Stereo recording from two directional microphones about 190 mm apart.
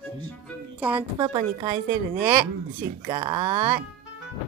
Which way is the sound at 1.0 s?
25° right (ahead or behind).